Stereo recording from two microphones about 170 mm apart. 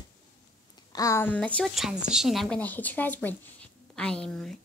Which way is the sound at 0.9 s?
20° left (ahead or behind).